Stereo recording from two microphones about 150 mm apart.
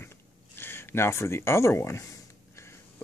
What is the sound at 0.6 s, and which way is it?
Speech, 15° left (ahead or behind).